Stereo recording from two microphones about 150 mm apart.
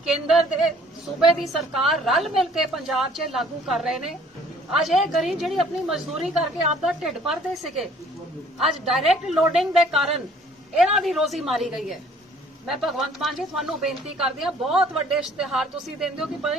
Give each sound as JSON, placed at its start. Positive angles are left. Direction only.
{"t": 0.0, "sound": "a woman's voice", "side_deg": 0}